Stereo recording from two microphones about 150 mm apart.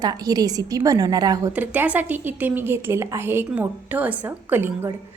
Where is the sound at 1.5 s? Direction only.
10° right (ahead or behind).